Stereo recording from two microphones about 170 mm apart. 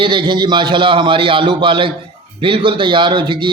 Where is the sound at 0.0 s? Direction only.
30° right (ahead or behind).